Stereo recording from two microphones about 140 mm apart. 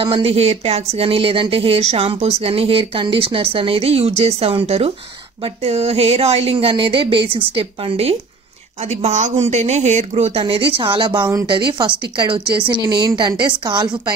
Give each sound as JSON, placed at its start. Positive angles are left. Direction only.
{"t": 0.0, "sound": "a woman's voice", "side_deg": -40}